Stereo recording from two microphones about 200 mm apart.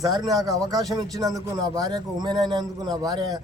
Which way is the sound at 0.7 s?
20° right (ahead or behind).